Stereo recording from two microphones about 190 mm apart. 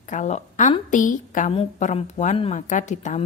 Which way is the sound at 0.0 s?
40° left (ahead or behind).